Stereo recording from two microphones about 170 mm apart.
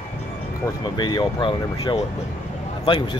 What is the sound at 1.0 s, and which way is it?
Speech, 25° left (ahead or behind).